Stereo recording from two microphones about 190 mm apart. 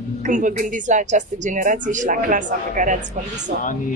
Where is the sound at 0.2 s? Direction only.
40° right (ahead or behind).